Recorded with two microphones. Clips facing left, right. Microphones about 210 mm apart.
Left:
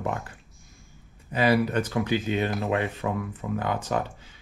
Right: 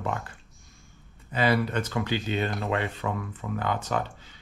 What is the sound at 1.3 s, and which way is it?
Speech, 15° left (ahead or behind).